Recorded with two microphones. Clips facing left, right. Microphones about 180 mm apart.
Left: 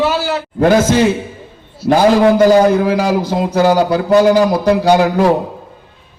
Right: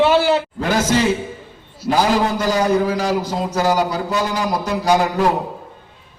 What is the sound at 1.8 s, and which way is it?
A man's voice, 65° left (ahead or behind).